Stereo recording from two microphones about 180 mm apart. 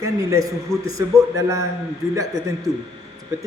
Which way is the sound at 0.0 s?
15° right (ahead or behind).